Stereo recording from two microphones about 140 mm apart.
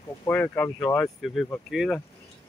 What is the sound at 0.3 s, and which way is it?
Speech, 10° left (ahead or behind).